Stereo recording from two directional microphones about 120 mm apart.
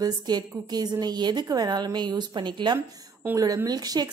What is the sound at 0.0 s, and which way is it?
Speech, 35° right (ahead or behind).